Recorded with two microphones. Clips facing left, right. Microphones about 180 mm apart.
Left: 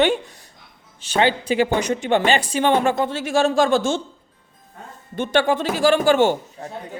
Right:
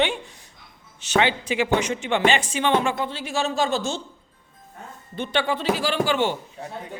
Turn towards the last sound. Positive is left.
turn(degrees=45)  # may be behind; listen again after turning